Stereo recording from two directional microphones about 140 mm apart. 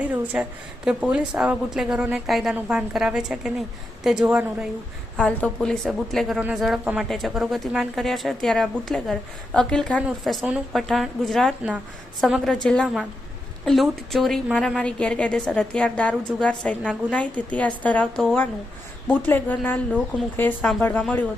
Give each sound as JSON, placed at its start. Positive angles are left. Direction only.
{"t": 0.0, "sound": "a woman's voice", "side_deg": -10}
{"t": 5.1, "sound": "a woman's voice", "side_deg": 5}
{"t": 10.4, "sound": "a woman's voice", "side_deg": -10}
{"t": 10.8, "sound": "a woman's voice", "side_deg": 0}